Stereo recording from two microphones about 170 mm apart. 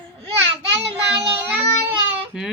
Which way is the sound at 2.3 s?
Centre (ahead or behind).